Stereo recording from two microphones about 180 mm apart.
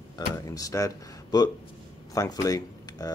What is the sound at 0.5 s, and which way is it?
Speech, 20° left (ahead or behind).